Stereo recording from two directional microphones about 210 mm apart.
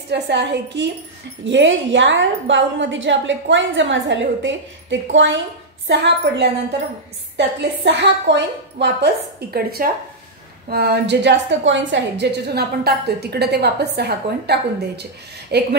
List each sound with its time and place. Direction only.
0.1 s a woman's voice: 55° right (ahead or behind)